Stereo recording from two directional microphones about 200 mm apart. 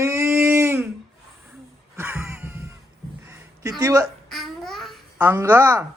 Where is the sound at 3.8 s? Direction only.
15° right (ahead or behind).